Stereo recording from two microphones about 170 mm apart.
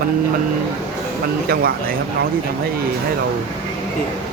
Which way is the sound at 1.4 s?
65° right (ahead or behind).